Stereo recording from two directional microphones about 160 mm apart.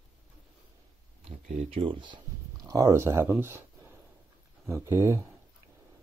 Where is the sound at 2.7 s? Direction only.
20° right (ahead or behind).